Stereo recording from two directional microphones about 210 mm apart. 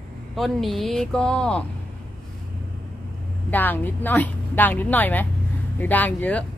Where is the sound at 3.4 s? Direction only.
10° left (ahead or behind).